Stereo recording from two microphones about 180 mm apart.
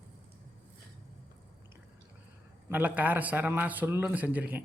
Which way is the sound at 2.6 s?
10° right (ahead or behind).